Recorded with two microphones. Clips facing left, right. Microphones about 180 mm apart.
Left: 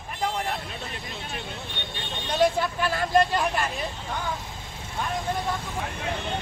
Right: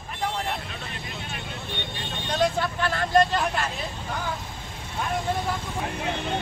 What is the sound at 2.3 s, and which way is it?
Speech, 10° left (ahead or behind).